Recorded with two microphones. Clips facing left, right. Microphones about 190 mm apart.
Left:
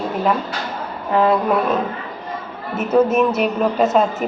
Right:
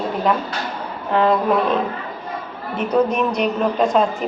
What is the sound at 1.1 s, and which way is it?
A woman's voice, 5° left (ahead or behind).